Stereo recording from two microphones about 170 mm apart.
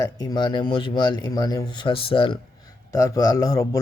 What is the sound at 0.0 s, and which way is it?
Speech, 20° left (ahead or behind).